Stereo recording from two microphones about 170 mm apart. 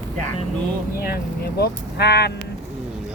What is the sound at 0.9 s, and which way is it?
Speech, 65° left (ahead or behind).